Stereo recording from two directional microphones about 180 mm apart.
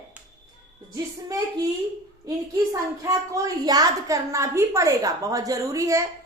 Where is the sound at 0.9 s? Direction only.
20° right (ahead or behind).